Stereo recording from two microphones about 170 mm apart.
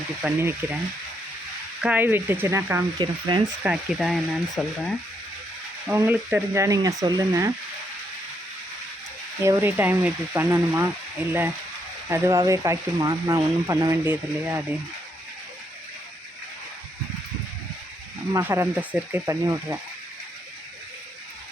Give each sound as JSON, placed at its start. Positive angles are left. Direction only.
{"t": 0.2, "sound": "speech", "side_deg": -10}
{"t": 1.8, "sound": "speech", "side_deg": -10}
{"t": 3.0, "sound": "speech", "side_deg": -25}
{"t": 3.6, "sound": "speech", "side_deg": -5}
{"t": 5.9, "sound": "speech", "side_deg": -15}
{"t": 9.4, "sound": "speech", "side_deg": -15}
{"t": 18.3, "sound": "speech", "side_deg": -15}